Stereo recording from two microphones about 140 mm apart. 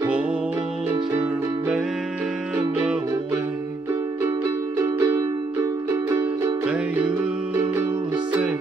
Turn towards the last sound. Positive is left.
turn(degrees=-15)  # may be behind; listen again after turning